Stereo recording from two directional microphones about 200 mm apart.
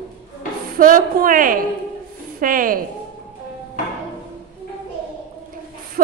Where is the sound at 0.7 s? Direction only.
45° right (ahead or behind).